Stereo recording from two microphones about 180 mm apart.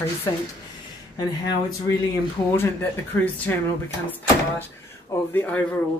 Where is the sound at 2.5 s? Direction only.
10° left (ahead or behind).